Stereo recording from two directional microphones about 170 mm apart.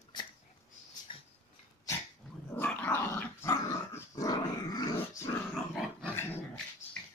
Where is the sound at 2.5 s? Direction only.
10° left (ahead or behind).